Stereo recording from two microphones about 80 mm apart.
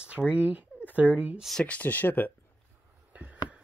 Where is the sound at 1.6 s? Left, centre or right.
Centre.